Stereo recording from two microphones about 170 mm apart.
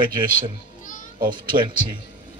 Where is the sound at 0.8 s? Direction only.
50° left (ahead or behind).